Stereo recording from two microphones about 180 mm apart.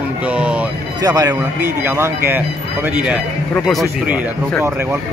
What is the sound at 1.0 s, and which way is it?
Speech, 20° right (ahead or behind).